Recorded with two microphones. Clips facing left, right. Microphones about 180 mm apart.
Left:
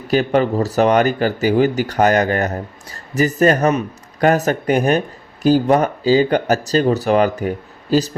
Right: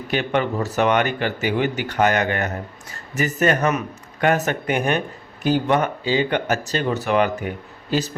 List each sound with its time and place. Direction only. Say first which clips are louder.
0.1 s speech: left 6 dB; 35° left (ahead or behind)